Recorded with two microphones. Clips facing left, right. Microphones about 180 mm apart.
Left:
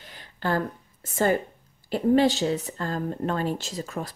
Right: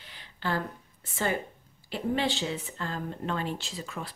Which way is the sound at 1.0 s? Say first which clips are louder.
Left 7 dB; 45° left (ahead or behind).